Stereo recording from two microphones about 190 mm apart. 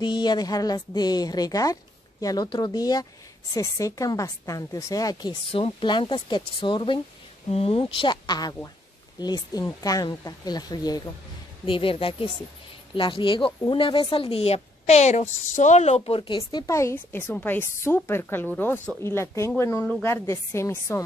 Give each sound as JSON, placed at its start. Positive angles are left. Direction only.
{"t": 0.0, "sound": "a woman's voice", "side_deg": 25}
{"t": 16.4, "sound": "a woman's voice", "side_deg": 15}